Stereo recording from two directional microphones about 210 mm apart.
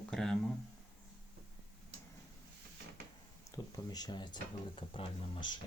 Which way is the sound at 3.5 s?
20° left (ahead or behind).